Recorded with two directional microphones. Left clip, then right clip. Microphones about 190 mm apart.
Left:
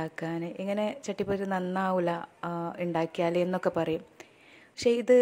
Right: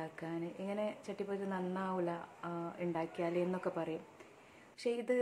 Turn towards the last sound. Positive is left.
turn(degrees=45)  # may be behind; listen again after turning